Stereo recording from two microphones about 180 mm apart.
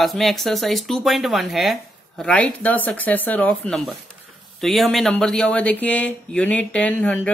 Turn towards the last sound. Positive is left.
turn(degrees=10)  # may be behind; listen again after turning